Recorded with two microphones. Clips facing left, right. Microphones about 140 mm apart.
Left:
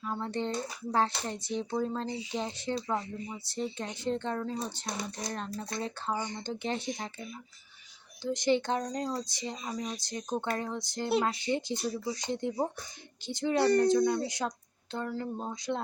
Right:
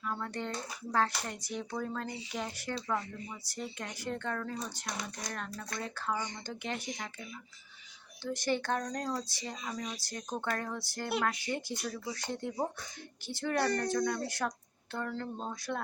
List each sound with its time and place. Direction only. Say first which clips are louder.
0.1 s speech: left 5 dB; 25° left (ahead or behind)
8.2 s speech: left 5 dB; 15° left (ahead or behind)
12.1 s speech: left 4 dB; 15° left (ahead or behind)